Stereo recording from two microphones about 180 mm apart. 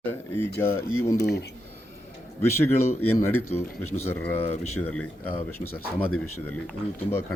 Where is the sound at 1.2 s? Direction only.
65° left (ahead or behind).